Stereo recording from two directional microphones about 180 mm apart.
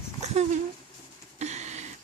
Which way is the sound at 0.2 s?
40° right (ahead or behind).